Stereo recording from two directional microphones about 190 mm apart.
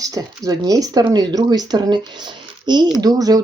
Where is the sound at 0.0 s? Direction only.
20° right (ahead or behind).